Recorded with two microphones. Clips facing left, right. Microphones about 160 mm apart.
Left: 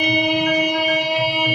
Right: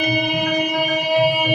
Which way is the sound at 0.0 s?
50° right (ahead or behind).